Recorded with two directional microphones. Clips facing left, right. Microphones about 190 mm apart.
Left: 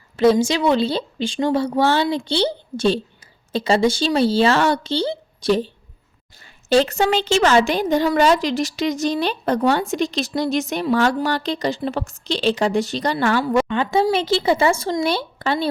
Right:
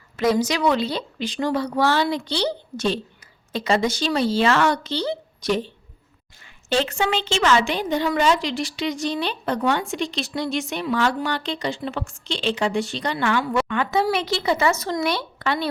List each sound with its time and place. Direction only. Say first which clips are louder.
0.2 s a woman's voice: left 4 dB; 30° left (ahead or behind)
13.7 s speech: left 3 dB; 25° left (ahead or behind)